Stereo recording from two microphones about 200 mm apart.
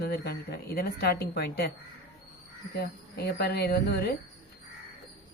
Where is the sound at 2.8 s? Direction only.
50° left (ahead or behind).